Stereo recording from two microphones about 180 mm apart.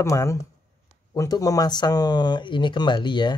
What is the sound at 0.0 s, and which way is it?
Speech, 15° left (ahead or behind).